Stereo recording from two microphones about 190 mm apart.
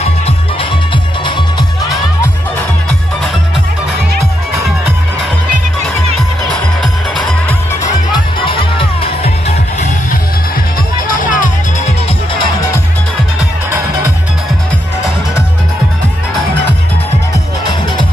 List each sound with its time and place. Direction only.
8.5 s music: 25° left (ahead or behind)
11.1 s music: 45° left (ahead or behind)